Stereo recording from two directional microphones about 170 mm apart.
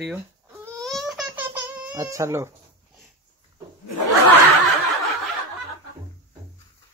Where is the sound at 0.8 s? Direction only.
Centre (ahead or behind).